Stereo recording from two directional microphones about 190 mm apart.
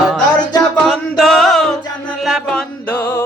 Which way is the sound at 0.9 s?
Centre (ahead or behind).